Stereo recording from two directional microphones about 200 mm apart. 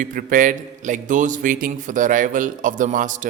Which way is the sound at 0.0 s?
45° right (ahead or behind).